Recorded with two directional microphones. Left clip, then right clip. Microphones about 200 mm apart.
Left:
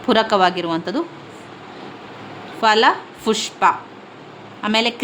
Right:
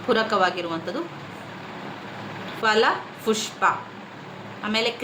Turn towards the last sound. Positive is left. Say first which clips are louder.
# left 6 dB
turn(degrees=50)  # may be behind; listen again after turning